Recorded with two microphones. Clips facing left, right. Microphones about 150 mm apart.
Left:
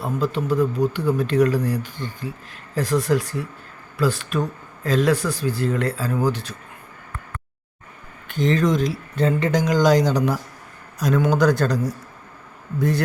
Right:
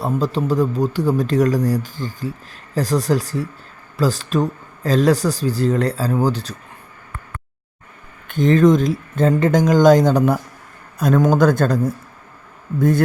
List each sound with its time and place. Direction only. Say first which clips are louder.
0.0 s a man's voice: right 3 dB; 35° right (ahead or behind)
8.3 s speech: right 6 dB; 50° right (ahead or behind)